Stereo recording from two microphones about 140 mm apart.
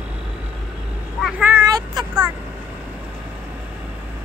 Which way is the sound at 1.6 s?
25° right (ahead or behind).